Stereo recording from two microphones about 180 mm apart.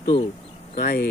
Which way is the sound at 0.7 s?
55° left (ahead or behind).